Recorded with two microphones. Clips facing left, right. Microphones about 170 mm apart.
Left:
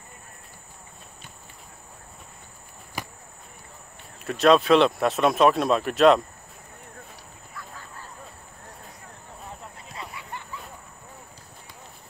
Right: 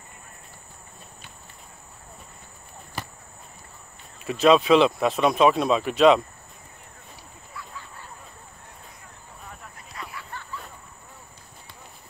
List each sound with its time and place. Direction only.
3.0 s cricket: 15° left (ahead or behind)
4.2 s speech: centre (ahead or behind)
7.5 s duck: 45° left (ahead or behind)
9.5 s a sound: 25° left (ahead or behind)